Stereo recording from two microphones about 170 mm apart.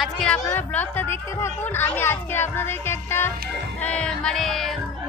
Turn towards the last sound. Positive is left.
turn(degrees=0)  # may be behind; listen again after turning